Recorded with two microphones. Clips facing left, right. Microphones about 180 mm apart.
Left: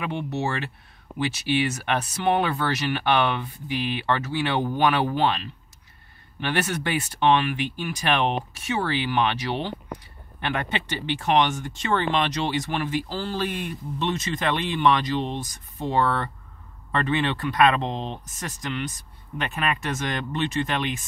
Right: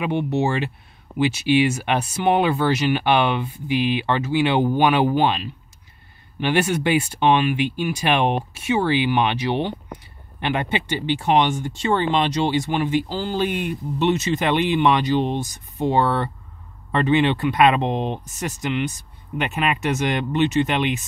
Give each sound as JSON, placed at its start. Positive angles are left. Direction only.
{"t": 0.0, "sound": "speech", "side_deg": -20}